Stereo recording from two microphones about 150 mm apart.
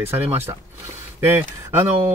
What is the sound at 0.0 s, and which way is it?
Speech, 15° right (ahead or behind).